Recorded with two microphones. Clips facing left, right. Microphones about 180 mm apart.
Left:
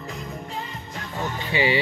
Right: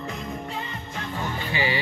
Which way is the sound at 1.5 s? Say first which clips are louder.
Left 5 dB; 20° left (ahead or behind).